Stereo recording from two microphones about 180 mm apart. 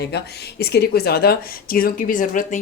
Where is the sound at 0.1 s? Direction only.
65° left (ahead or behind).